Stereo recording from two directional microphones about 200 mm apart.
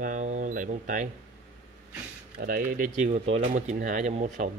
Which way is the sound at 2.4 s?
45° right (ahead or behind).